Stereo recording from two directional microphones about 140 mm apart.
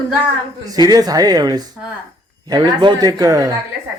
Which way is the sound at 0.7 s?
30° right (ahead or behind).